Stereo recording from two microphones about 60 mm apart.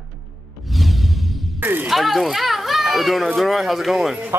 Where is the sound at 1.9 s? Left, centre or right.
Centre.